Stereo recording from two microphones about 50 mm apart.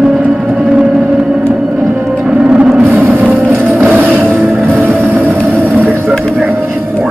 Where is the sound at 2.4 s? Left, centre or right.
Right.